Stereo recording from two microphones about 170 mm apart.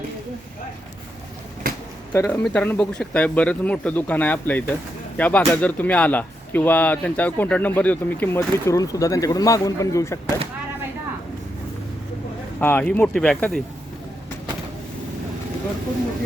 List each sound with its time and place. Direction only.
2.1 s speech: 15° left (ahead or behind)
12.5 s speech: 10° left (ahead or behind)